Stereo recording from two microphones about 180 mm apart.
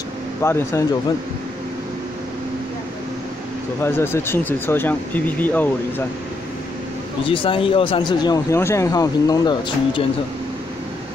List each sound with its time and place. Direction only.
0.4 s speech: 15° left (ahead or behind)
3.8 s speech: 15° left (ahead or behind)
7.2 s speech: 30° left (ahead or behind)